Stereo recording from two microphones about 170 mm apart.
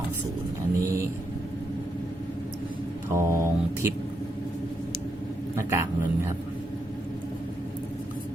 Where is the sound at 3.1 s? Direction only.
15° right (ahead or behind).